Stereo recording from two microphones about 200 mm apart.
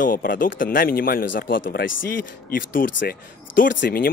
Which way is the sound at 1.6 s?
70° left (ahead or behind).